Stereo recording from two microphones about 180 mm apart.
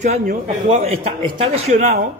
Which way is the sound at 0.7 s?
35° right (ahead or behind).